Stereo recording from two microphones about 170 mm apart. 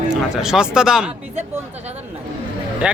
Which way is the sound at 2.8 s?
5° right (ahead or behind).